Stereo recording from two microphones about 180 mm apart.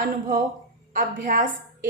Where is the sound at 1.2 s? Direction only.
45° right (ahead or behind).